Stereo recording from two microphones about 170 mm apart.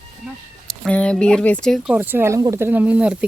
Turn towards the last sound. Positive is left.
turn(degrees=-5)  # may be behind; listen again after turning